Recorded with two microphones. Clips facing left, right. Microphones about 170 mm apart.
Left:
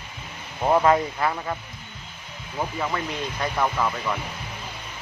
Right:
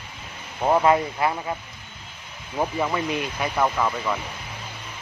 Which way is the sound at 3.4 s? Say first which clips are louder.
Right 1 dB; 5° right (ahead or behind).